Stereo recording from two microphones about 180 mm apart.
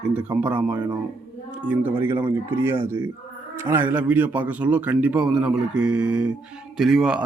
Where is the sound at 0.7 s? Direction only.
25° right (ahead or behind).